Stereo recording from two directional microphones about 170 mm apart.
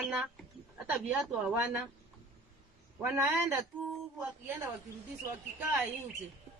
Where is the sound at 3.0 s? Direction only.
10° right (ahead or behind).